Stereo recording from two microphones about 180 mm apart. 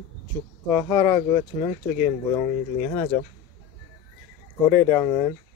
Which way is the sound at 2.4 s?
40° left (ahead or behind).